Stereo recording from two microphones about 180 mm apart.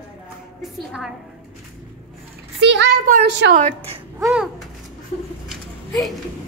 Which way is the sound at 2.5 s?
90° right.